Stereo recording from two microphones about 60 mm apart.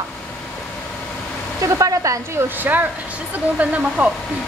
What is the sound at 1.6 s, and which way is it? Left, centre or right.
Speech, right.